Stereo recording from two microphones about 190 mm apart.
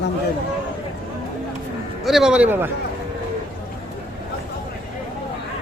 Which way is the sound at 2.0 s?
Centre (ahead or behind).